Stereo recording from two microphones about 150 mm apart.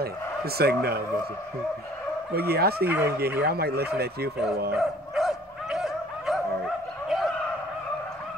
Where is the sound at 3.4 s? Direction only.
90° right.